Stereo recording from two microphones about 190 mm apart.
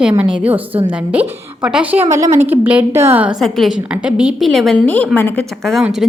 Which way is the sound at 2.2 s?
40° right (ahead or behind).